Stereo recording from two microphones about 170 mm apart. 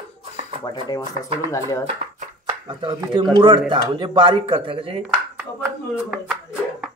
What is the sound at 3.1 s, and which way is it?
Speech, 25° right (ahead or behind).